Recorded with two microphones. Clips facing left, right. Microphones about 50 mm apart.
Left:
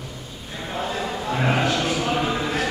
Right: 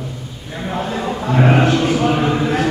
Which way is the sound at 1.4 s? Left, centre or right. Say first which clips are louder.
Right 7 dB; right.